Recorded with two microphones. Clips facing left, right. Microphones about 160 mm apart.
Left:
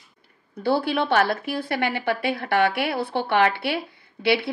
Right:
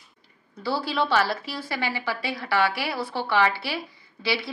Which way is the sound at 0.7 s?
60° left (ahead or behind).